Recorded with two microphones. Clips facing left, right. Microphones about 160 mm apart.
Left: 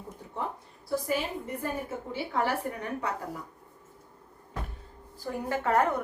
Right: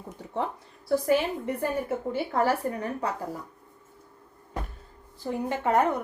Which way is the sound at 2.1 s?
45° right (ahead or behind).